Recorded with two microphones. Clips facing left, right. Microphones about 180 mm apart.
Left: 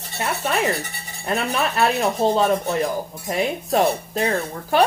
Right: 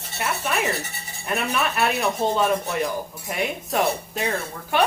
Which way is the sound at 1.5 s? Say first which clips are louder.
Left 3 dB; 35° left (ahead or behind).